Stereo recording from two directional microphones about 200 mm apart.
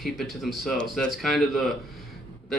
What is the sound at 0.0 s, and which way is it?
Speech, centre (ahead or behind).